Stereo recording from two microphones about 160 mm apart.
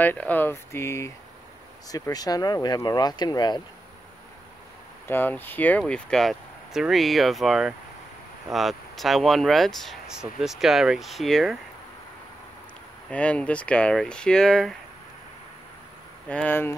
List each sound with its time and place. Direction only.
0.0 s speech: 10° left (ahead or behind); by 3.6 s 25° left (ahead or behind)
5.0 s speech: 10° left (ahead or behind)
13.1 s speech: 10° left (ahead or behind)
16.3 s speech: 10° left (ahead or behind)